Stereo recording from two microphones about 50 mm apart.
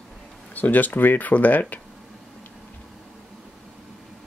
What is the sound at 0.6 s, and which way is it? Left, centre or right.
Speech, left.